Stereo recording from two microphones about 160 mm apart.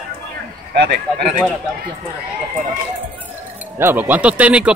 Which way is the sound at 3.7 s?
15° right (ahead or behind).